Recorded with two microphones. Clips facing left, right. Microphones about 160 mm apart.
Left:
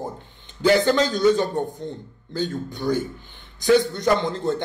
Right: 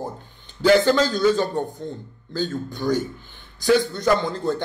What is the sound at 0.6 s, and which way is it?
A man's voice, 20° left (ahead or behind).